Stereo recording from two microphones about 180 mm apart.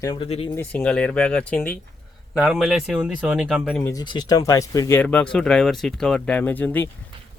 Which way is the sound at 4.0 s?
20° left (ahead or behind).